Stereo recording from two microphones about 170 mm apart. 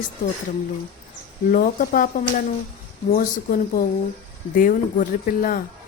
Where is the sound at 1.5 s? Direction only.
55° left (ahead or behind).